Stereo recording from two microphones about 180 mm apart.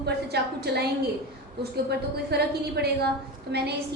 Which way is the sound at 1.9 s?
65° right (ahead or behind).